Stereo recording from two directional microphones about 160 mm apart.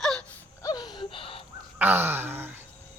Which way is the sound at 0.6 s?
25° left (ahead or behind).